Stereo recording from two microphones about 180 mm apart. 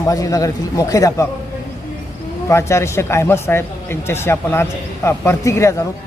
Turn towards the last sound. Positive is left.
turn(degrees=15)  # may be behind; listen again after turning